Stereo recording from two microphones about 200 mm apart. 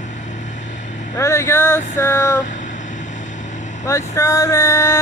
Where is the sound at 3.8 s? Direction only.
15° left (ahead or behind).